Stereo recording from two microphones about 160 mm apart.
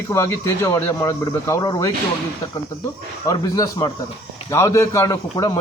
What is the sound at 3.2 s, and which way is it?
A man's voice, 20° left (ahead or behind).